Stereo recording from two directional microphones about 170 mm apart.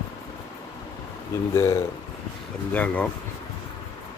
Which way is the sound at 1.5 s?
15° left (ahead or behind).